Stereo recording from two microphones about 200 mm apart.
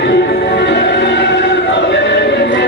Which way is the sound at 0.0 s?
60° left (ahead or behind).